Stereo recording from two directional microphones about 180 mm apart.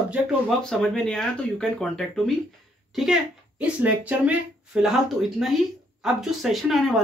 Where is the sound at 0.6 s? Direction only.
5° left (ahead or behind).